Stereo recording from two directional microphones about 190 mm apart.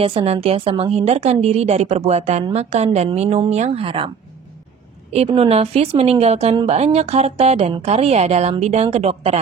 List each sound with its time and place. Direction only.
0.0 s speech: 30° right (ahead or behind)
5.1 s speech: 30° right (ahead or behind)